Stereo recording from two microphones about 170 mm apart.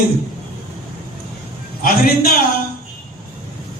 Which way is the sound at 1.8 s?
60° left (ahead or behind).